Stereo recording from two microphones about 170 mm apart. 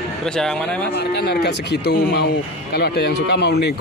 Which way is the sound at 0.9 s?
75° left (ahead or behind).